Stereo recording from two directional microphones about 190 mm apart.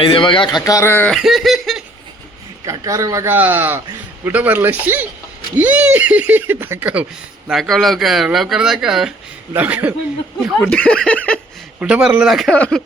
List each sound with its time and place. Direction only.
0.0 s speech: 25° left (ahead or behind)
1.1 s snicker: centre (ahead or behind)
2.6 s speech: 15° right (ahead or behind)
10.4 s speech: 5° left (ahead or behind)
11.8 s speech: 5° right (ahead or behind)